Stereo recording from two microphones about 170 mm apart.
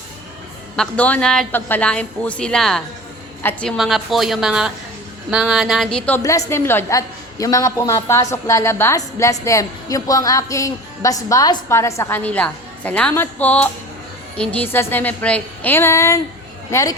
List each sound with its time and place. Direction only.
0.8 s a woman's voice: 10° left (ahead or behind)